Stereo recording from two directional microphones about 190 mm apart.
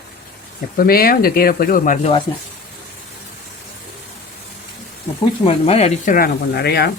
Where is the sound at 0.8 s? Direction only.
50° left (ahead or behind).